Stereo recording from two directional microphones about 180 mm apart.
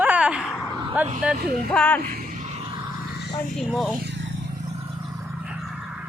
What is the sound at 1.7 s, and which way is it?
Speech, 5° left (ahead or behind).